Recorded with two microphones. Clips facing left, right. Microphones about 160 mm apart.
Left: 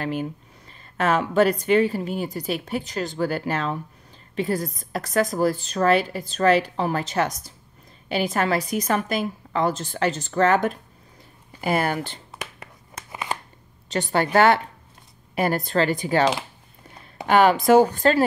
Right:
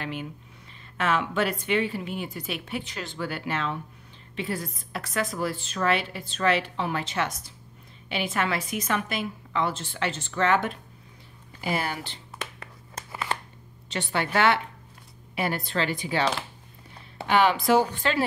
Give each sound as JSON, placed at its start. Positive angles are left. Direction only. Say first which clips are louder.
{"t": 0.0, "sound": "a woman's voice", "louder": "left 7 dB", "side_deg": 40}
{"t": 13.1, "sound": "a sound", "louder": "left 1 dB", "side_deg": 15}
{"t": 13.8, "sound": "a woman's voice", "louder": "left 6 dB", "side_deg": 40}
{"t": 17.3, "sound": "speech", "louder": "left 5 dB", "side_deg": 45}